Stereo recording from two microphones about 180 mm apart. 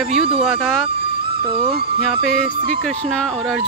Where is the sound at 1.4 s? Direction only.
30° right (ahead or behind).